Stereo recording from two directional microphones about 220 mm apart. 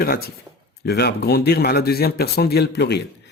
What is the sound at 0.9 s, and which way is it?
A man's voice, 45° left (ahead or behind).